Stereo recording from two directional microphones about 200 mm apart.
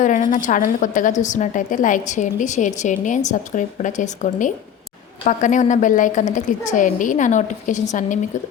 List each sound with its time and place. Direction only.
0.0 s a woman's voice: 40° left (ahead or behind)